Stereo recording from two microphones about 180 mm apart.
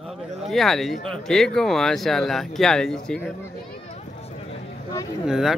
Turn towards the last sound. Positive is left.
turn(degrees=0)  # may be behind; listen again after turning